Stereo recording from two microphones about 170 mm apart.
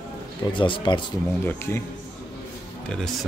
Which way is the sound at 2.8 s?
5° left (ahead or behind).